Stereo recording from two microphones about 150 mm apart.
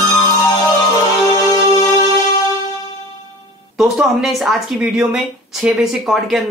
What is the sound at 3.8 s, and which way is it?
Speech, centre (ahead or behind).